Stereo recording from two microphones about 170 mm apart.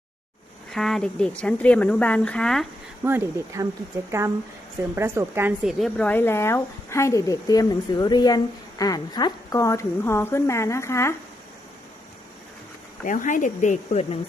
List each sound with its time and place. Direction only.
0.7 s speech: centre (ahead or behind)
3.0 s speech: 15° right (ahead or behind)
4.9 s speech: 15° right (ahead or behind)
5.6 s speech: 5° left (ahead or behind)
13.1 s speech: 50° left (ahead or behind)